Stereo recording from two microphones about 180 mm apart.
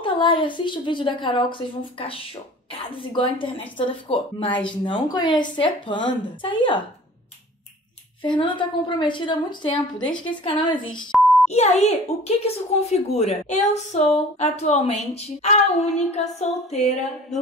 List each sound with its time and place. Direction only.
0.0 s a woman's voice: 30° left (ahead or behind)
8.2 s a woman's voice: 25° left (ahead or behind)
11.1 s beep: centre (ahead or behind)
11.5 s a woman's voice: 40° left (ahead or behind)